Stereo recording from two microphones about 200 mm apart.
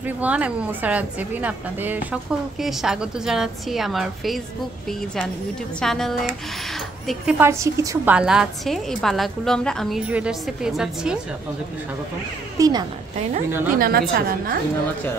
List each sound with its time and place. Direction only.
0.0 s a woman's voice: 5° right (ahead or behind)
12.5 s a woman's voice: 20° right (ahead or behind)
13.7 s a woman's voice: 50° right (ahead or behind)